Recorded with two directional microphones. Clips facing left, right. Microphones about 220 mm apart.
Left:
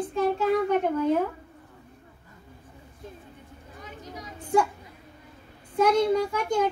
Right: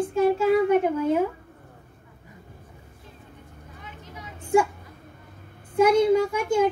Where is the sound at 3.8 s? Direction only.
40° left (ahead or behind).